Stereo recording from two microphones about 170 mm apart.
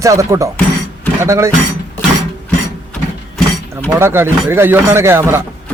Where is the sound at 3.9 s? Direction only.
15° right (ahead or behind).